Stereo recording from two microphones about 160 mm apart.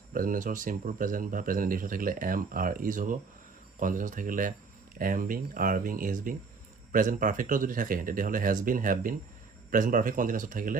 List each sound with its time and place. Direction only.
0.1 s speech: 60° right (ahead or behind)